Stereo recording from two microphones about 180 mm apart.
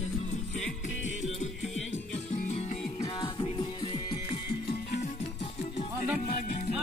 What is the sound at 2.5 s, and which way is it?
Music, 35° left (ahead or behind).